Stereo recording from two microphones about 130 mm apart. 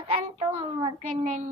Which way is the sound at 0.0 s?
50° right (ahead or behind).